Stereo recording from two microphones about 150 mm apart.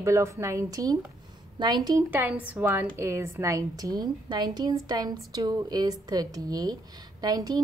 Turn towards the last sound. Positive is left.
turn(degrees=-25)  # may be behind; listen again after turning